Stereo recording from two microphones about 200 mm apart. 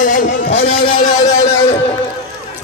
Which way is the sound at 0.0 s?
40° left (ahead or behind).